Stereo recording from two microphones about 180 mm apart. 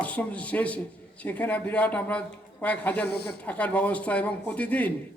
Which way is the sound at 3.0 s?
65° left (ahead or behind).